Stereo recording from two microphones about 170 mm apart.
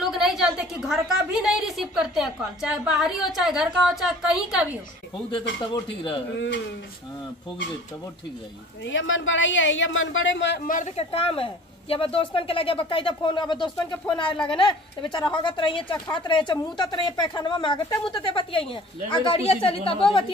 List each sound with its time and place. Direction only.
0.0 s a sound: centre (ahead or behind)
3.3 s a woman's voice: centre (ahead or behind)
5.3 s a woman's voice: 30° left (ahead or behind)
6.3 s speech: 90° left
8.8 s speech: 90° left
11.0 s a woman's voice: 35° left (ahead or behind)